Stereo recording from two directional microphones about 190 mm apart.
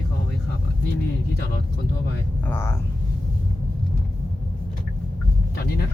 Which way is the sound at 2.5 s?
15° left (ahead or behind).